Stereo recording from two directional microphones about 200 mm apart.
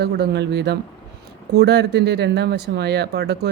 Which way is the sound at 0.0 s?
55° right (ahead or behind).